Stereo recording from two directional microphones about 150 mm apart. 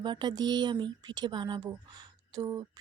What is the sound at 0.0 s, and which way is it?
A woman's voice, 30° right (ahead or behind).